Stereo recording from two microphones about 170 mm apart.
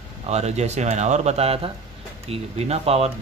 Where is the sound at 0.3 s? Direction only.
40° right (ahead or behind).